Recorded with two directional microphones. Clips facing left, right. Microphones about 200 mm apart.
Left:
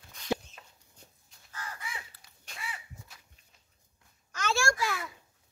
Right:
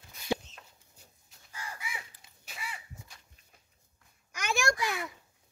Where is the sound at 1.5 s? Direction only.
10° right (ahead or behind).